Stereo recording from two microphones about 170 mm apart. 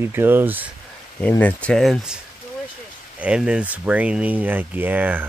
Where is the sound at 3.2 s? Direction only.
5° right (ahead or behind).